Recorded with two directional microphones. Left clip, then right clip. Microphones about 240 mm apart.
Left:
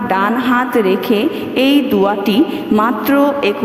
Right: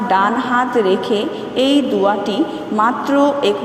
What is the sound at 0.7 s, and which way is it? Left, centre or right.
A woman's voice, left.